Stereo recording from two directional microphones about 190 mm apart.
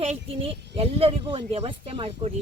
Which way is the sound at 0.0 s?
30° right (ahead or behind).